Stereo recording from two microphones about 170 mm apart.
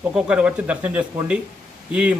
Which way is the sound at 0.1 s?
5° right (ahead or behind).